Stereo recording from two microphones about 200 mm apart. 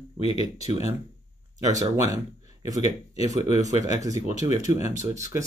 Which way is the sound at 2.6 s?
15° right (ahead or behind).